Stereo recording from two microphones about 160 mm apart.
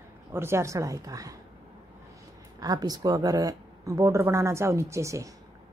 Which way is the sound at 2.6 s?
25° right (ahead or behind).